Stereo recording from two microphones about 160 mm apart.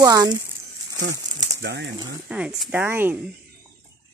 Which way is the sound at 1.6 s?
90° right.